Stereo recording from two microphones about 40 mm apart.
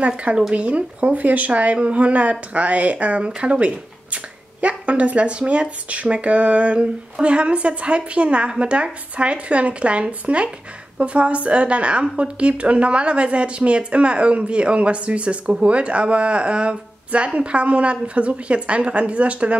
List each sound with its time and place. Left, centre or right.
0.0 s a woman's voice: right